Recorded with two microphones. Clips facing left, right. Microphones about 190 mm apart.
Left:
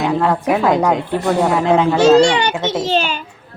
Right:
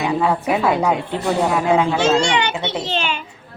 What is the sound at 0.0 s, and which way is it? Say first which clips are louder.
Speech: left 2 dB; 10° right (ahead or behind).